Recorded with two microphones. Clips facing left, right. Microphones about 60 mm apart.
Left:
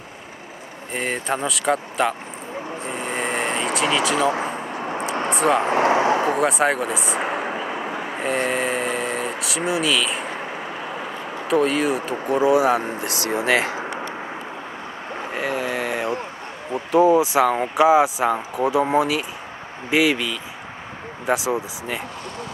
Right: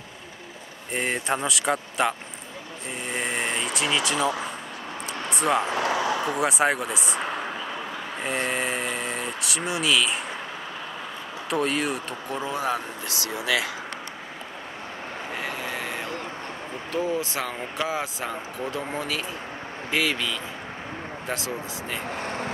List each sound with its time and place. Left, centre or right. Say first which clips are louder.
0.9 s speech: left 2 dB; centre
3.1 s vehicle: left 3 dB; left
4.2 s speech: left 5 dB; left
5.3 s speech: left 4 dB; left
5.6 s vehicle: left 7 dB; left
6.4 s speech: left 4 dB; centre
7.2 s vehicle: left 5 dB; left
8.2 s speech: left 5 dB; centre
11.4 s speech: left 6 dB; centre
12.8 s speech: left 7 dB; left
15.3 s vehicle: left 8 dB; left
16.9 s speech: left 12 dB; centre